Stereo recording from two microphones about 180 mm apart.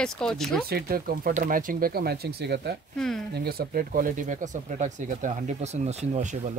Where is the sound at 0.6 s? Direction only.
60° right (ahead or behind).